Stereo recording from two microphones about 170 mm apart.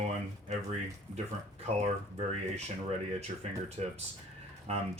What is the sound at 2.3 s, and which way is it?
Speech, 40° right (ahead or behind).